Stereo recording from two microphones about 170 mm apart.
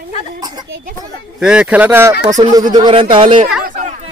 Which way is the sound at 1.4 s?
5° right (ahead or behind).